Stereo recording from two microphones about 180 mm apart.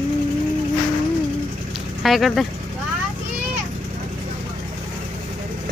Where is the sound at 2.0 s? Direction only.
Centre (ahead or behind).